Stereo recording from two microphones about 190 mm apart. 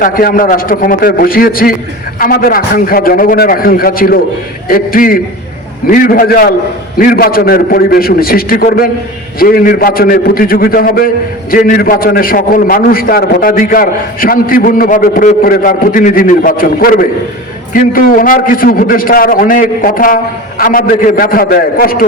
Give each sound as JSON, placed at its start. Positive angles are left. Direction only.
{"t": 0.0, "sound": "a man's voice", "side_deg": 45}